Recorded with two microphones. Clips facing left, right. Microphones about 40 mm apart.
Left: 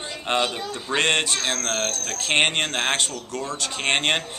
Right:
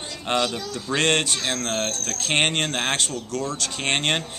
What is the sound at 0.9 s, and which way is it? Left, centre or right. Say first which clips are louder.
Speech: even; centre.